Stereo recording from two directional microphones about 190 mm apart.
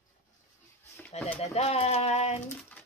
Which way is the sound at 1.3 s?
35° left (ahead or behind).